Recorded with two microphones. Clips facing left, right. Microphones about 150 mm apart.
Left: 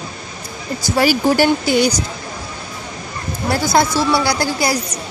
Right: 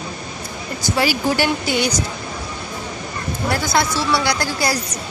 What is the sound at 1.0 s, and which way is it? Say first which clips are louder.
Speech: left 5 dB; 45° left (ahead or behind).